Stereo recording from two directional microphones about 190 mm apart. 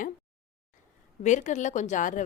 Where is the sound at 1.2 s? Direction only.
40° left (ahead or behind).